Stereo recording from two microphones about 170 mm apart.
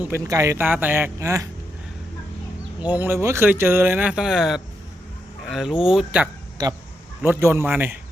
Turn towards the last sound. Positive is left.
turn(degrees=-10)  # may be behind; listen again after turning